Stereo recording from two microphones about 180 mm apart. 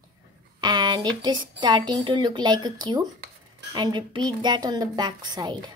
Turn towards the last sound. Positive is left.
turn(degrees=-25)  # may be behind; listen again after turning